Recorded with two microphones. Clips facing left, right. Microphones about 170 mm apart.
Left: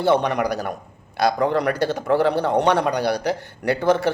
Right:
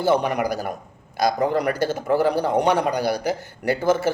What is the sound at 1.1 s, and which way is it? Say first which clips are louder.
Speech: left 1 dB; 65° left (ahead or behind).